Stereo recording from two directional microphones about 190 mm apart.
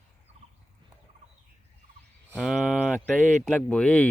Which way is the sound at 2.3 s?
Centre (ahead or behind).